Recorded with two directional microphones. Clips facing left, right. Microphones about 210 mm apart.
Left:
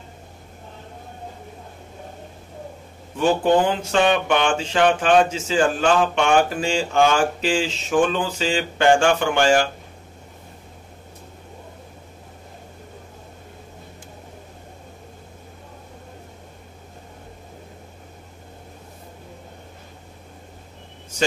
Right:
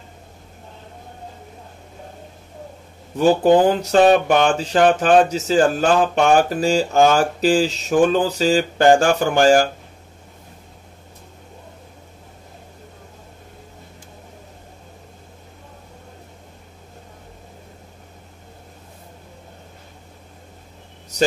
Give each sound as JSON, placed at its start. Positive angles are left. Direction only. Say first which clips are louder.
{"t": 3.2, "sound": "speech", "louder": "right 4 dB", "side_deg": -35}